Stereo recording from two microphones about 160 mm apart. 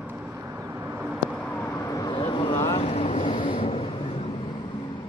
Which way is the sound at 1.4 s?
10° left (ahead or behind).